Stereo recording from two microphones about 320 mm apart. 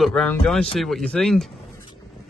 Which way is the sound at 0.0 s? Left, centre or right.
Centre.